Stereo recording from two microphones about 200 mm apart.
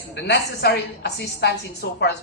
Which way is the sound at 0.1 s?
55° left (ahead or behind).